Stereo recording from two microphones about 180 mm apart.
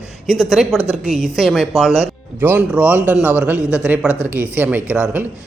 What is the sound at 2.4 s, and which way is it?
A man's voice, 10° right (ahead or behind).